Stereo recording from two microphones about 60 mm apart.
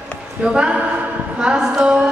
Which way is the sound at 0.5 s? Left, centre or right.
Centre.